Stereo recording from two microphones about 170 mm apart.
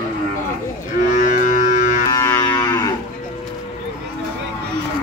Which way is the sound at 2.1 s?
15° left (ahead or behind).